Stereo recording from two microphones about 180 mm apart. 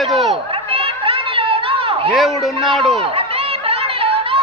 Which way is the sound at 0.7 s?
30° right (ahead or behind).